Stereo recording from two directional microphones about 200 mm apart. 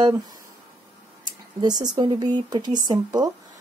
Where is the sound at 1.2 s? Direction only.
20° right (ahead or behind).